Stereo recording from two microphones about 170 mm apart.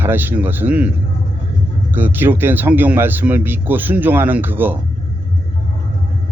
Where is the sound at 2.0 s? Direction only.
10° right (ahead or behind).